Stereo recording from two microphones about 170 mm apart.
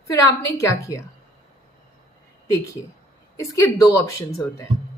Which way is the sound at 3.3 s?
20° left (ahead or behind).